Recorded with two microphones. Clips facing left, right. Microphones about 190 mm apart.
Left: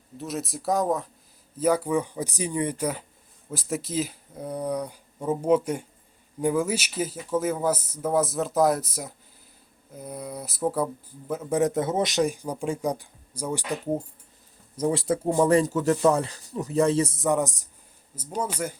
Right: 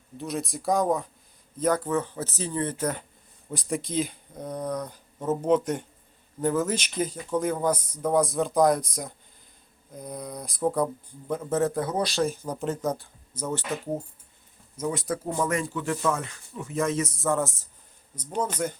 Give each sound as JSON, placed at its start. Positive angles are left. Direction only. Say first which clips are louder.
{"t": 0.2, "sound": "a man's voice", "louder": "even", "side_deg": 0}
{"t": 14.8, "sound": "speech", "louder": "left 5 dB", "side_deg": 30}
{"t": 17.2, "sound": "a man's voice", "louder": "left 2 dB", "side_deg": 15}